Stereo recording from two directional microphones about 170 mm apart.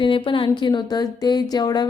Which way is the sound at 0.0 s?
30° left (ahead or behind).